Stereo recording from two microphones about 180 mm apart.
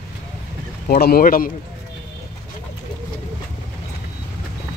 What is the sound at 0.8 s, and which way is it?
Speech, 55° left (ahead or behind).